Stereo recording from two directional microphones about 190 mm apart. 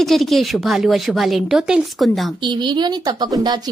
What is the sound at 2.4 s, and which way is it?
A woman's voice, 25° right (ahead or behind).